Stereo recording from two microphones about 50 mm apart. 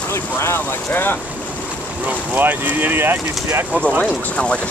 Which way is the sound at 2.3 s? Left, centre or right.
Right.